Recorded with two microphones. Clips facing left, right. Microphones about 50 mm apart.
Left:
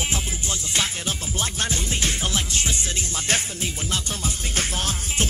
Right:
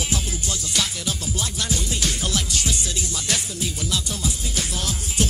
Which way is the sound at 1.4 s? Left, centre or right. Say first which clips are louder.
Left 1 dB; left.